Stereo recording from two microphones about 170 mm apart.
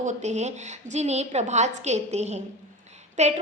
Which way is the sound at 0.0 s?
45° right (ahead or behind).